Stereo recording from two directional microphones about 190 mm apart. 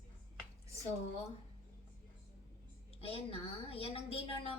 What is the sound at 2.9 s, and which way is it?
A woman's voice, 30° left (ahead or behind).